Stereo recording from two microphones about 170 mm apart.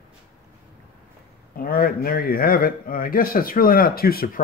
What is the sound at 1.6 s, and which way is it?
A man's voice, 60° left (ahead or behind).